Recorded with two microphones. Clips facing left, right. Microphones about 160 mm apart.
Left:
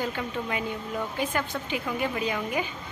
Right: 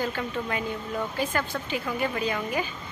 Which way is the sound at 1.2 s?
15° left (ahead or behind).